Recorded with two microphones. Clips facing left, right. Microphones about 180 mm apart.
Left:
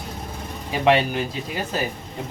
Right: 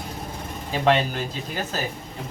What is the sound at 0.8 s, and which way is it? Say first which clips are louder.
Speech: left 2 dB; 15° left (ahead or behind).